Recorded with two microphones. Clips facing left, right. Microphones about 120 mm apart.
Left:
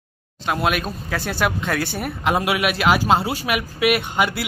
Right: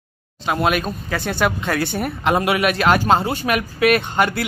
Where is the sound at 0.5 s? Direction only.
Centre (ahead or behind).